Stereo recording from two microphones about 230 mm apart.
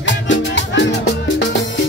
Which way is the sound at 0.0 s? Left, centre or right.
Left.